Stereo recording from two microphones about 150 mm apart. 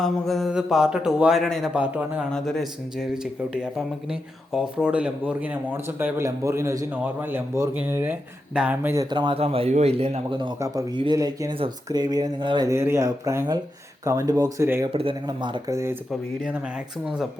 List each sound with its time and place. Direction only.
0.0 s a man's voice: centre (ahead or behind)
2.3 s a man's voice: 5° left (ahead or behind); by 9.0 s 15° right (ahead or behind)
9.0 s a man's voice: 30° right (ahead or behind)
14.8 s a man's voice: 40° right (ahead or behind)
15.7 s a man's voice: 20° right (ahead or behind)